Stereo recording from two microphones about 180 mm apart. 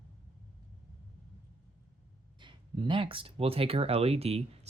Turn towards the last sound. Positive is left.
turn(degrees=-35)  # may be behind; listen again after turning